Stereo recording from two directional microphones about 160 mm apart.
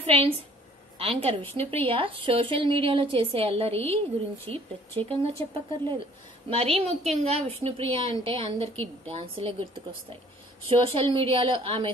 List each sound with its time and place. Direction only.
0.0 s a woman's voice: 40° right (ahead or behind)